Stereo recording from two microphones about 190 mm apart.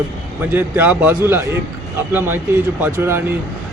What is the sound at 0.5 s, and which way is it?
A man's voice, 10° right (ahead or behind).